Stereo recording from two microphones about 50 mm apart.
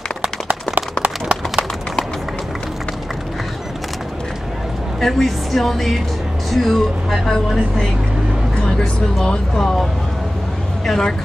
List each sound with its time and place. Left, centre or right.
1.0 s a sound: centre
5.0 s speech: centre
10.9 s speech: centre